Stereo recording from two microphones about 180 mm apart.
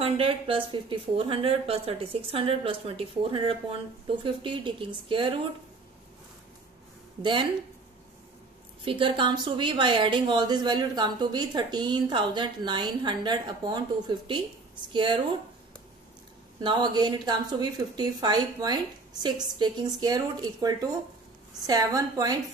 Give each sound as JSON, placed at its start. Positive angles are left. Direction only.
{"t": 0.0, "sound": "speech", "side_deg": -30}
{"t": 8.8, "sound": "speech", "side_deg": -30}
{"t": 16.6, "sound": "speech", "side_deg": -25}